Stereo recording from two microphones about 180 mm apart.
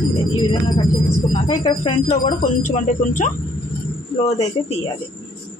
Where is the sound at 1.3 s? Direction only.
25° left (ahead or behind).